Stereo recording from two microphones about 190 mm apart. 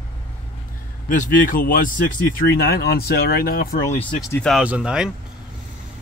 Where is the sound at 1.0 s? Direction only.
45° left (ahead or behind).